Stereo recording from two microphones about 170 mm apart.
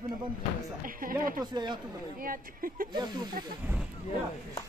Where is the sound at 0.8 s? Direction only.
55° right (ahead or behind).